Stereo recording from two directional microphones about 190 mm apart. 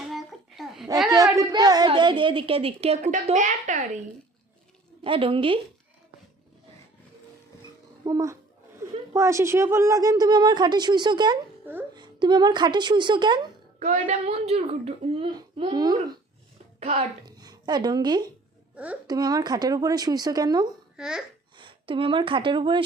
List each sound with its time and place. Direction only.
0.0 s a sound: centre (ahead or behind)
1.0 s a sound: 20° right (ahead or behind)
1.9 s a woman's voice: 25° right (ahead or behind)
5.0 s a woman's voice: 30° right (ahead or behind)
8.0 s a woman's voice: 15° right (ahead or behind)
11.6 s speech: 10° right (ahead or behind)
11.9 s a woman's voice: 25° right (ahead or behind)
13.7 s a woman's voice: 40° right (ahead or behind); by 16.1 s 20° right (ahead or behind)
17.2 s a woman's voice: 20° right (ahead or behind)
20.9 s speech: 5° right (ahead or behind)
21.6 s a woman's voice: 25° right (ahead or behind)